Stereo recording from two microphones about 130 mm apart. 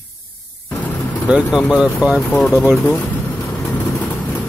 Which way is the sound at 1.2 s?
5° right (ahead or behind).